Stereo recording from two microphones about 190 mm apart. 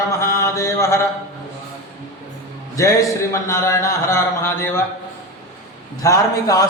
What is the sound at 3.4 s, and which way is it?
A man's voice, 15° left (ahead or behind).